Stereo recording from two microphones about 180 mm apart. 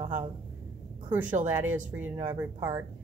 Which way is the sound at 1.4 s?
10° right (ahead or behind).